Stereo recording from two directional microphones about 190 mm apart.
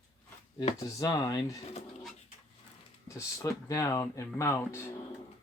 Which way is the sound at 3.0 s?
15° left (ahead or behind).